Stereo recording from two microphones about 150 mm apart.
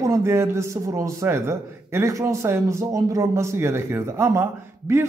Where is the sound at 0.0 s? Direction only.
20° right (ahead or behind).